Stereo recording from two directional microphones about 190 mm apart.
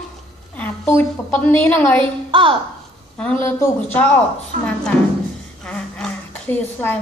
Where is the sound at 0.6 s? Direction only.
10° left (ahead or behind).